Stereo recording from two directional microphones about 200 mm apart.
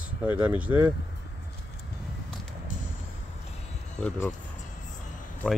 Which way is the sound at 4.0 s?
5° left (ahead or behind).